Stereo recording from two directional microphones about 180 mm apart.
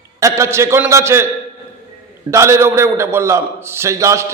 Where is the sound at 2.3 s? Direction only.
15° right (ahead or behind).